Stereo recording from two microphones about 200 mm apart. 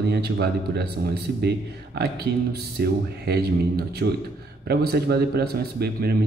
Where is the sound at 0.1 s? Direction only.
55° right (ahead or behind).